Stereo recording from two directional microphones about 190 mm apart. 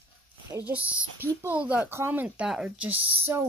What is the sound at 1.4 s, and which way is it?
Speech, 10° right (ahead or behind).